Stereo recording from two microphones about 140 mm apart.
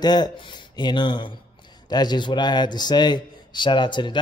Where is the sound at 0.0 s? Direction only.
30° left (ahead or behind).